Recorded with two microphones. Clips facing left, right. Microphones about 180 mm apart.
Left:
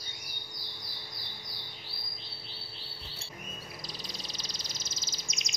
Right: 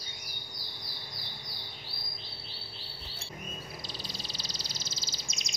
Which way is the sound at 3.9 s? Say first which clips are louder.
Right 1 dB; 30° right (ahead or behind).